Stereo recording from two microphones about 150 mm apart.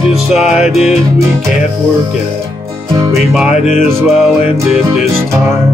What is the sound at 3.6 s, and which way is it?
Music, 50° left (ahead or behind).